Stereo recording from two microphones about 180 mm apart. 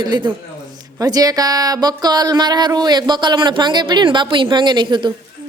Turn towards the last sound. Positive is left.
turn(degrees=-25)  # may be behind; listen again after turning